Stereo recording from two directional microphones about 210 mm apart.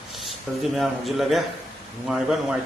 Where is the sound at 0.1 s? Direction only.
Centre (ahead or behind).